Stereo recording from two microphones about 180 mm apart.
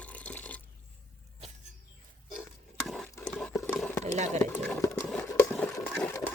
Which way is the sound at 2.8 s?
Centre (ahead or behind).